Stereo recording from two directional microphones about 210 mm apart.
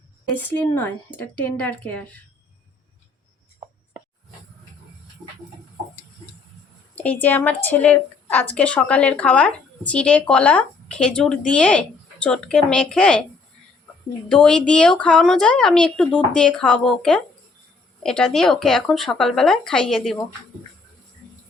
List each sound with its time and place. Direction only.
0.3 s speech: 5° left (ahead or behind)
6.9 s a woman's voice: 5° left (ahead or behind)
14.3 s a woman's voice: 5° left (ahead or behind)